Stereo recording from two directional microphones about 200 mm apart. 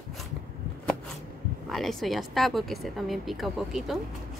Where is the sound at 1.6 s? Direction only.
Centre (ahead or behind).